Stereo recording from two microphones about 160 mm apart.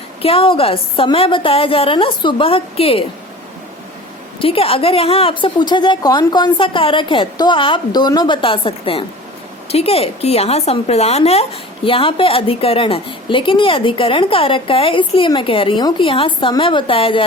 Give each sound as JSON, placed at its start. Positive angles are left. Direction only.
{"t": 0.2, "sound": "a woman's voice", "side_deg": 35}
{"t": 4.4, "sound": "a woman's voice", "side_deg": 35}